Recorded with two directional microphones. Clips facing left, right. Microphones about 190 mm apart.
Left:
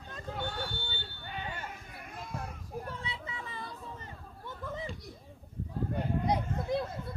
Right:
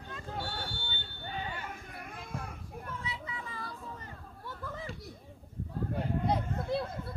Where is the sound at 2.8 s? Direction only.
30° left (ahead or behind).